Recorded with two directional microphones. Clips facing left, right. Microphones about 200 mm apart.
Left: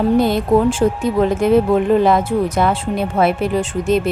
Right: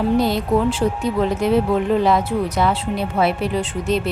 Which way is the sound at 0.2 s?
50° left (ahead or behind).